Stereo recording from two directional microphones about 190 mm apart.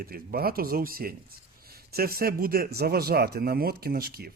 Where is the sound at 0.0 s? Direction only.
50° right (ahead or behind).